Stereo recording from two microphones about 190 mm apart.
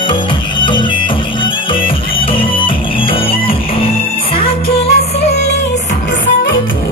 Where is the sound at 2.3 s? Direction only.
25° left (ahead or behind).